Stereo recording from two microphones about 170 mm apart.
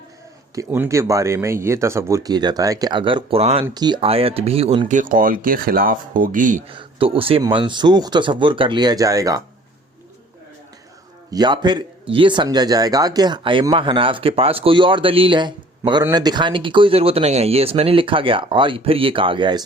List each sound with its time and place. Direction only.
0.5 s speech: 15° right (ahead or behind); by 6.6 s 50° right (ahead or behind)
6.7 s speech: 30° right (ahead or behind)
11.3 s speech: 25° right (ahead or behind)